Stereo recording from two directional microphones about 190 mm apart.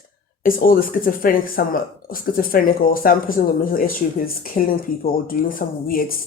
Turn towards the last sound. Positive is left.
turn(degrees=50)  # may be behind; listen again after turning